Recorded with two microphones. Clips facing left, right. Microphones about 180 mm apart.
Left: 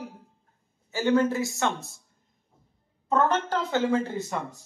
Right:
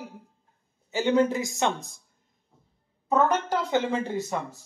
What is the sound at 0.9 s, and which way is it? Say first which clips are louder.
Speech: even; 15° right (ahead or behind).